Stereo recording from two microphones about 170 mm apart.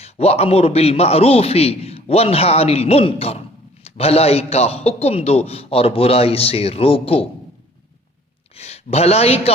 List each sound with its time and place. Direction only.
0.0 s a man's voice: 35° left (ahead or behind)
8.5 s speech: 35° left (ahead or behind)